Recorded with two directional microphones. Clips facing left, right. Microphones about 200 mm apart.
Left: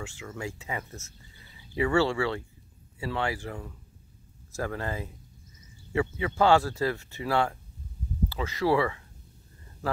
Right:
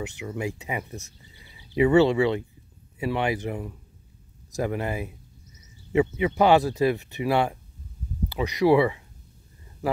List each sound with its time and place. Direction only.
0.0 s speech: 20° right (ahead or behind)